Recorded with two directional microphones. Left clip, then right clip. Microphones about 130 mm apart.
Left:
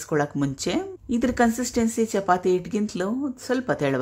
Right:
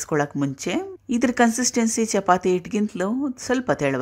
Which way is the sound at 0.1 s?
15° right (ahead or behind).